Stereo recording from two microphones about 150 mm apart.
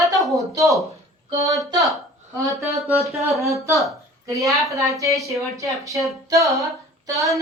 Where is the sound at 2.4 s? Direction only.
20° right (ahead or behind).